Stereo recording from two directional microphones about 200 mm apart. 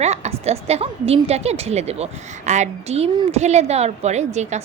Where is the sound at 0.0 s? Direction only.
35° right (ahead or behind).